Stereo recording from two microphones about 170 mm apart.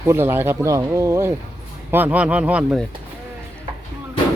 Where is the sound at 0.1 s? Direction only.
15° right (ahead or behind).